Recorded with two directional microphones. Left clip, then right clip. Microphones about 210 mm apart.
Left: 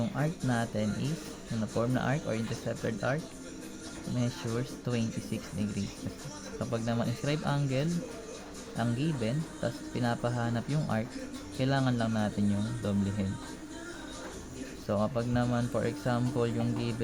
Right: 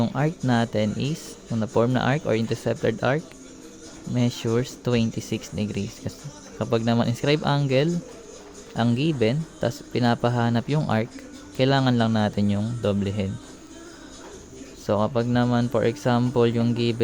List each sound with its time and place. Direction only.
0.0 s speech: 50° right (ahead or behind)
4.2 s speech: 50° right (ahead or behind)
14.8 s speech: 50° right (ahead or behind)